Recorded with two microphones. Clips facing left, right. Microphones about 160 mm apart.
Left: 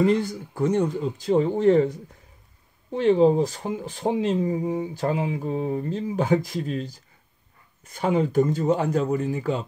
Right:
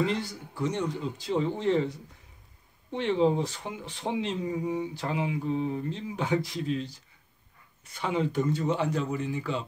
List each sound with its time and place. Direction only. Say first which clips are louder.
0.0 s speech: left 8 dB; 50° left (ahead or behind)